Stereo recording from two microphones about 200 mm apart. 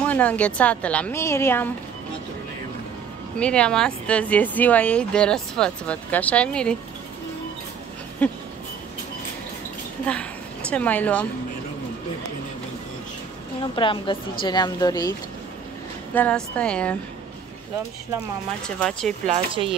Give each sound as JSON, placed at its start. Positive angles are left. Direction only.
{"t": 0.0, "sound": "a woman's voice", "side_deg": 5}
{"t": 3.3, "sound": "speech", "side_deg": 5}
{"t": 8.2, "sound": "a woman's voice", "side_deg": 5}
{"t": 10.1, "sound": "a woman's voice", "side_deg": 5}
{"t": 13.6, "sound": "a woman's voice", "side_deg": 25}
{"t": 16.2, "sound": "speech", "side_deg": 5}
{"t": 18.8, "sound": "speech", "side_deg": 0}
{"t": 19.2, "sound": "speech", "side_deg": -30}